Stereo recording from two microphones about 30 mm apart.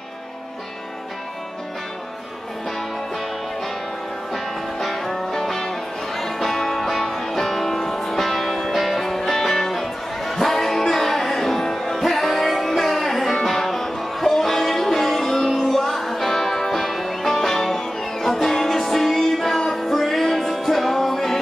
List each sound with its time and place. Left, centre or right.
4.3 s music: centre